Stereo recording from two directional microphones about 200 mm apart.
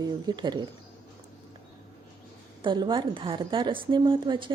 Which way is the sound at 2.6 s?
25° right (ahead or behind).